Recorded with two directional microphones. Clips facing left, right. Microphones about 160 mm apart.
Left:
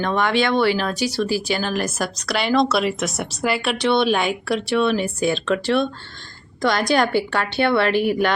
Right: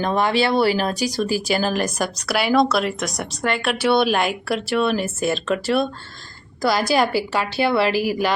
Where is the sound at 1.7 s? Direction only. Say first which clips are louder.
Right 1 dB; centre (ahead or behind).